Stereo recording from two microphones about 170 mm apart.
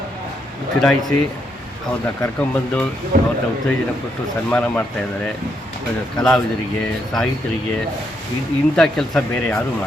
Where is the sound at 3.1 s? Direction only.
60° right (ahead or behind).